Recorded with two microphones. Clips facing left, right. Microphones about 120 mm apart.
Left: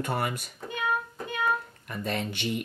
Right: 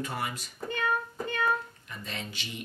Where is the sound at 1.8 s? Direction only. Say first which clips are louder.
Left 9 dB; 55° left (ahead or behind).